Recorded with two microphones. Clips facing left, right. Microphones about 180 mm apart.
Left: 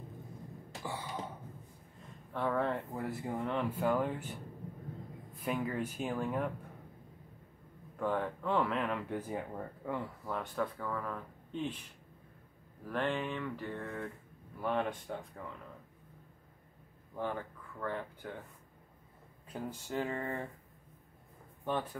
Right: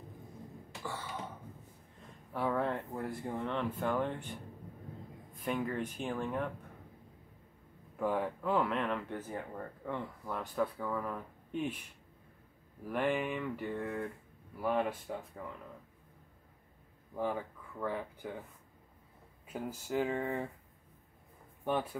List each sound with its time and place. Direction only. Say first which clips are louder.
0.8 s a sound: left 1 dB; 15° left (ahead or behind)
2.3 s speech: even; centre (ahead or behind)
8.0 s speech: right 1 dB; 5° right (ahead or behind)
12.8 s speech: right 2 dB; 10° right (ahead or behind)
17.1 s speech: right 2 dB; 10° right (ahead or behind)
19.4 s speech: right 1 dB; 5° right (ahead or behind)